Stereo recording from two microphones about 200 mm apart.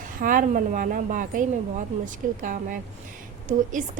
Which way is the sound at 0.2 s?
40° right (ahead or behind).